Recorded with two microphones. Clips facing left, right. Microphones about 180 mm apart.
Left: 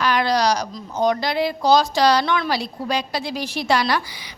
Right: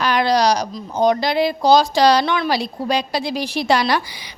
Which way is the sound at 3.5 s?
15° right (ahead or behind).